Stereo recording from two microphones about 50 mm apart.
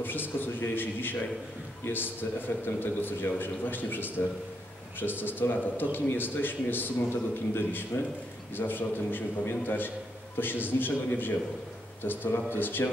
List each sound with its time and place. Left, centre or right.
0.0 s a man's voice: left
2.6 s a man's voice: left